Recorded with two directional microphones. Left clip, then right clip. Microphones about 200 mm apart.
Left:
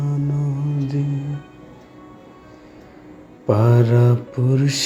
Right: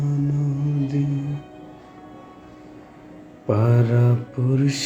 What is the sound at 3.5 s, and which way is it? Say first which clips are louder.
Mantra: left 4 dB; 20° left (ahead or behind).